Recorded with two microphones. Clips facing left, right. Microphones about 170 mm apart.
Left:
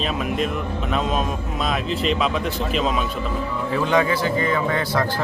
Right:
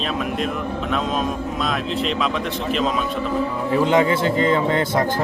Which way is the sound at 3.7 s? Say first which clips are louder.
Right 3 dB; 20° right (ahead or behind).